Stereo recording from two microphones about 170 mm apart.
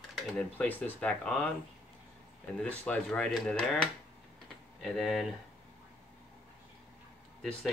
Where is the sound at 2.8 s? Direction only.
10° left (ahead or behind).